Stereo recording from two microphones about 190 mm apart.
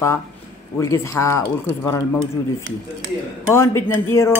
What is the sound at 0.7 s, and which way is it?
Speech, 15° left (ahead or behind).